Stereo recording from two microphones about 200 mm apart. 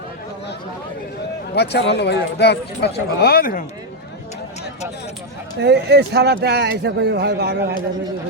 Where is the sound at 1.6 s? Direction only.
55° left (ahead or behind).